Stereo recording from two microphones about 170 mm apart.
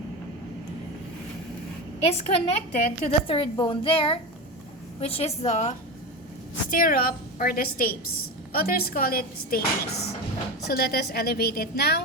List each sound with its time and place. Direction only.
2.0 s a woman's voice: 35° left (ahead or behind)
6.7 s speech: 55° left (ahead or behind); by 12.0 s 70° left (ahead or behind)